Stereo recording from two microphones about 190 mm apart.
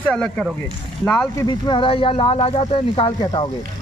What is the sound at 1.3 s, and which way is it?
Speech, 25° left (ahead or behind).